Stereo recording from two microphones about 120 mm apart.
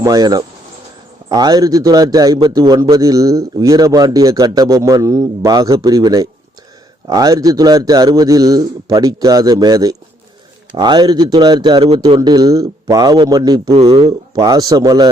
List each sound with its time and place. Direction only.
0.0 s a man's voice: 30° right (ahead or behind)
13.7 s speech: 55° right (ahead or behind)
14.1 s a man's voice: 35° right (ahead or behind)